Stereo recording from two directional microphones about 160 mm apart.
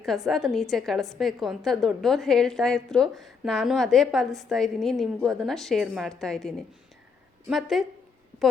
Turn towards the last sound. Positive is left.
turn(degrees=0)  # may be behind; listen again after turning